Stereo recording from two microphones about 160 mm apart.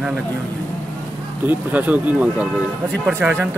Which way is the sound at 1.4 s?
10° right (ahead or behind).